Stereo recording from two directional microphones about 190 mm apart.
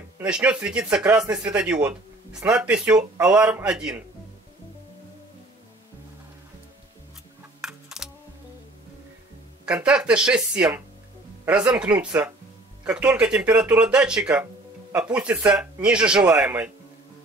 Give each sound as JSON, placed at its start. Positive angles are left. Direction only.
{"t": 0.2, "sound": "speech", "side_deg": -5}
{"t": 7.6, "sound": "a sound", "side_deg": -5}
{"t": 9.7, "sound": "speech", "side_deg": -5}